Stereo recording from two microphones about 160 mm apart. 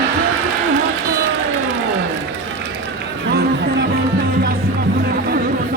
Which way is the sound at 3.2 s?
90° right.